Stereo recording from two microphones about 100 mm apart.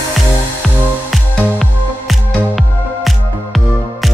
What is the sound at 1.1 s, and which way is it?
Music, centre (ahead or behind).